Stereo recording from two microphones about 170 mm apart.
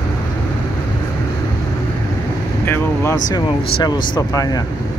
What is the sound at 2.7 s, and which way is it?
Speech, 20° left (ahead or behind).